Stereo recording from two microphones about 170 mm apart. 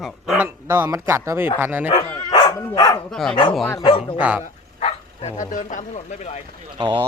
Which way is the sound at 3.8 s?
30° left (ahead or behind).